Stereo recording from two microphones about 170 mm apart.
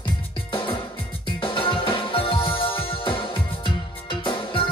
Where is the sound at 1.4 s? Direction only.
30° left (ahead or behind).